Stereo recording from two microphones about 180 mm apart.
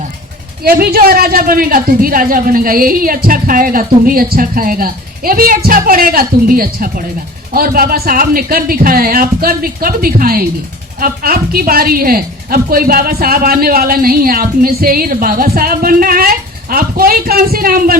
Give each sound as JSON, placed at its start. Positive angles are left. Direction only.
{"t": 0.6, "sound": "a woman's voice", "side_deg": -55}